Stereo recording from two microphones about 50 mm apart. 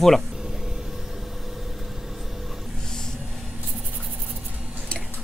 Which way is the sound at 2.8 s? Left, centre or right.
Centre.